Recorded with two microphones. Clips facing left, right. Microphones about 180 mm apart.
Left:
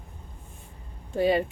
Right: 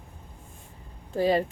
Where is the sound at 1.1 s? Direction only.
Centre (ahead or behind).